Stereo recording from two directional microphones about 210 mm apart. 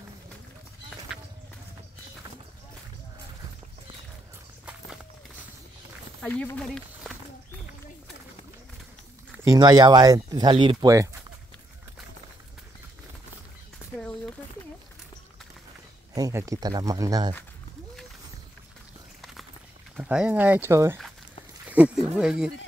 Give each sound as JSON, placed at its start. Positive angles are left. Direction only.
{"t": 6.2, "sound": "speech", "side_deg": 10}
{"t": 9.4, "sound": "speech", "side_deg": -15}
{"t": 13.7, "sound": "a sound", "side_deg": 5}
{"t": 16.2, "sound": "speech", "side_deg": -15}
{"t": 20.0, "sound": "speech", "side_deg": -5}